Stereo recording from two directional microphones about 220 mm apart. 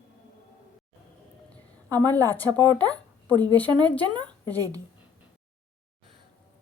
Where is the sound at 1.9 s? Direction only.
15° right (ahead or behind).